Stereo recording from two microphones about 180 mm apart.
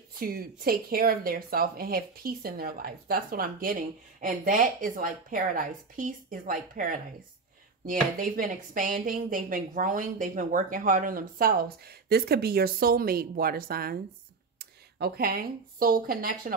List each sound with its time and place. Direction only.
0.2 s speech: 55° right (ahead or behind)